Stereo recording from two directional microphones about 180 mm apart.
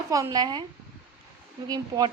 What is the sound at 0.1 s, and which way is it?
Speech, 20° right (ahead or behind).